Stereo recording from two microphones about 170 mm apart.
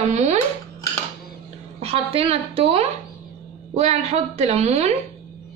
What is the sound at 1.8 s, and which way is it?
Speech, 35° right (ahead or behind).